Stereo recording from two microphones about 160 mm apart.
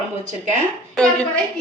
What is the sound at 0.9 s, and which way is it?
Speech, 5° left (ahead or behind).